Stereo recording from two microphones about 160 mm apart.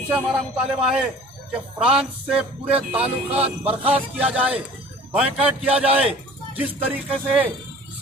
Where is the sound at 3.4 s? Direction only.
40° right (ahead or behind).